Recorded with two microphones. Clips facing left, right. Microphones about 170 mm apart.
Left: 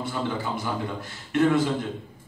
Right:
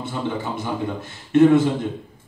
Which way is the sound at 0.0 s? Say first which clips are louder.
Right 2 dB; 20° right (ahead or behind).